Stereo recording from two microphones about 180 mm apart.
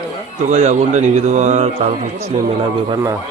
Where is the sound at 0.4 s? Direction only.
40° right (ahead or behind).